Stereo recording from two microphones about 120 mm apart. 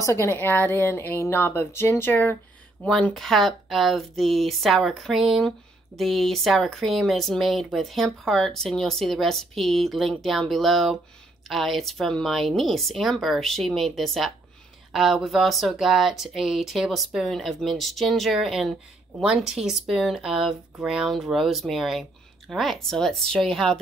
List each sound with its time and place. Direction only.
0.0 s a woman's voice: 20° left (ahead or behind); by 23.8 s centre (ahead or behind)